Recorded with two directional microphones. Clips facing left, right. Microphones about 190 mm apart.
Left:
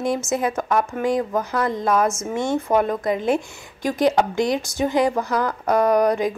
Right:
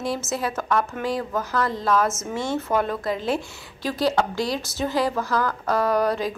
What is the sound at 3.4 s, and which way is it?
Speech, 50° left (ahead or behind).